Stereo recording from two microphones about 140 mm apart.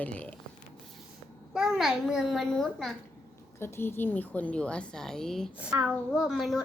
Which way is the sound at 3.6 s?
15° left (ahead or behind).